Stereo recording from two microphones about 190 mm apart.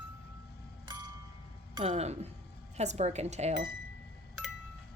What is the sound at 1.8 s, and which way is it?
Mechanisms, 35° right (ahead or behind).